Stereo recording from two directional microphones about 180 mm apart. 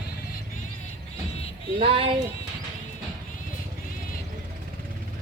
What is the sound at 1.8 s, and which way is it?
Speech, 30° right (ahead or behind).